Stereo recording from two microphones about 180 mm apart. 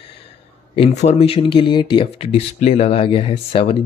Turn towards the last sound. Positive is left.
turn(degrees=30)  # may be behind; listen again after turning